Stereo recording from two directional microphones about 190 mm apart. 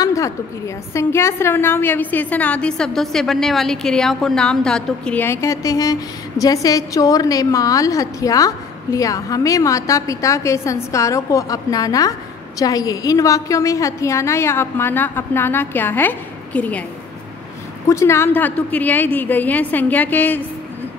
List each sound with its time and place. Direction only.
0.0 s a sound: 15° left (ahead or behind)
0.9 s a woman's voice: 15° left (ahead or behind)
17.8 s a woman's voice: 15° left (ahead or behind)